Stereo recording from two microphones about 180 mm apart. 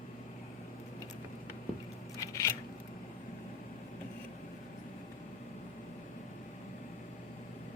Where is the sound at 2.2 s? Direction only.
15° left (ahead or behind).